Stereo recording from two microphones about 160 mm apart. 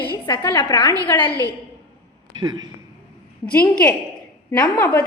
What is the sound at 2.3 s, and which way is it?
Speech, 25° right (ahead or behind).